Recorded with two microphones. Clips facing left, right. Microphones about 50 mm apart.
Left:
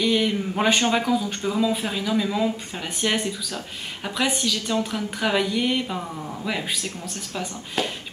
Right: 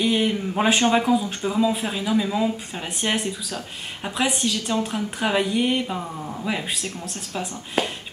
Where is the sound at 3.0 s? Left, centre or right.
Centre.